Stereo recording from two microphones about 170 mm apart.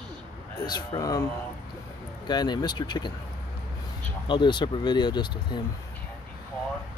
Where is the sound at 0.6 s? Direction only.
25° left (ahead or behind).